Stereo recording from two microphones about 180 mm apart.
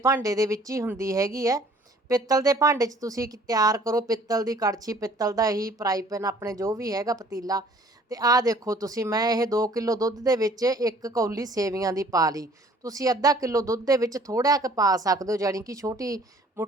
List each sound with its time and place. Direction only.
0.0 s a woman's voice: 20° right (ahead or behind)